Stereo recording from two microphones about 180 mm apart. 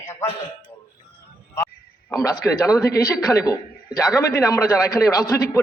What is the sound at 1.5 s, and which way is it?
A man's voice, 15° left (ahead or behind).